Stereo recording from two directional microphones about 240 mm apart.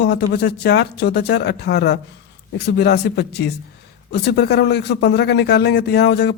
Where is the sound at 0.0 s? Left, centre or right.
Left.